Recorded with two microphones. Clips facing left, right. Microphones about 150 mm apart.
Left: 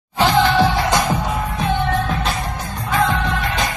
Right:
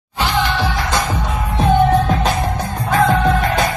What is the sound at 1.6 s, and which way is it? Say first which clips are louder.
Music: right 8 dB; 40° right (ahead or behind).